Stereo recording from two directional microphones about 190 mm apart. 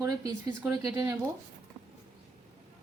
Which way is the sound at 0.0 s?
20° right (ahead or behind).